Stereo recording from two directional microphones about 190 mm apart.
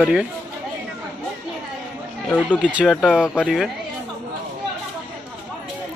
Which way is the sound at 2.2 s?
5° left (ahead or behind).